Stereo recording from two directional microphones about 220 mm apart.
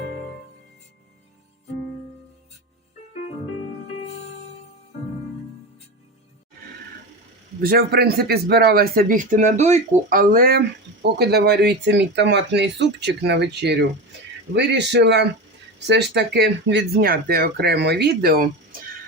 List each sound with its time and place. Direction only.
7.6 s speech: 45° right (ahead or behind)